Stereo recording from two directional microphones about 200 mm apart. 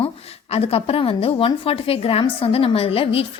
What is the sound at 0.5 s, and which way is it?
A woman's voice, 30° left (ahead or behind).